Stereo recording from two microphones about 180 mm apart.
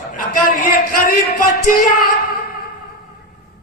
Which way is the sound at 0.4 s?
50° left (ahead or behind).